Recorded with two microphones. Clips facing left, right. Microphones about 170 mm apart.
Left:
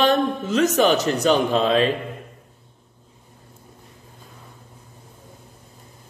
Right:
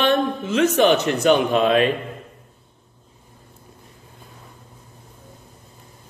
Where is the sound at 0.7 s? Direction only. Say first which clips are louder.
Right 1 dB; 40° left (ahead or behind).